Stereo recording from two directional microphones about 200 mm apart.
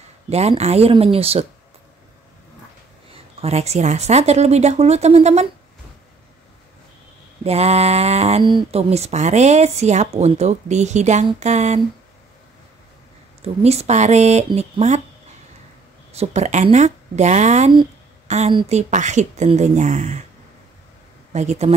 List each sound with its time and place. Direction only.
0.3 s speech: 30° right (ahead or behind)
3.1 s speech: 30° right (ahead or behind)
7.4 s speech: 30° right (ahead or behind)
13.4 s speech: 30° right (ahead or behind)
16.1 s speech: 35° right (ahead or behind)
21.3 s speech: 35° right (ahead or behind)